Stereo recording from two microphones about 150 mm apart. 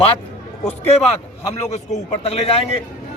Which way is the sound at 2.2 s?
40° left (ahead or behind).